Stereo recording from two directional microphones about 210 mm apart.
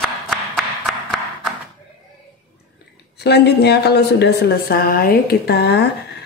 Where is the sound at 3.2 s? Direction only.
50° left (ahead or behind).